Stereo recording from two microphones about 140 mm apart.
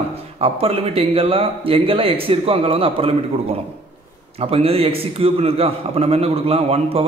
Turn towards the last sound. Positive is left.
turn(degrees=-45)  # may be behind; listen again after turning